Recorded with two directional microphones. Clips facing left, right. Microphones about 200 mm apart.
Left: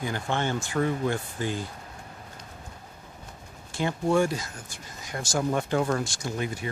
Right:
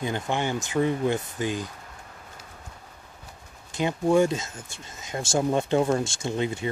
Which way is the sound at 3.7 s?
20° right (ahead or behind).